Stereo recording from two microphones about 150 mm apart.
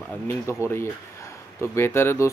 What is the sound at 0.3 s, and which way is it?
Speech, 15° left (ahead or behind).